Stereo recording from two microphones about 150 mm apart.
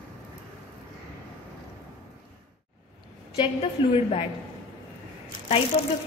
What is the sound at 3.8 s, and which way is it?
Speech, 35° left (ahead or behind).